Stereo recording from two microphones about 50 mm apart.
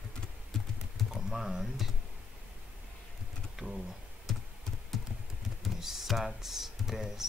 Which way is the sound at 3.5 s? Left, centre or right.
Centre.